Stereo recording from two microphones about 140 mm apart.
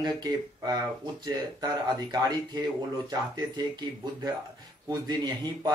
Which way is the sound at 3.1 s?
30° right (ahead or behind).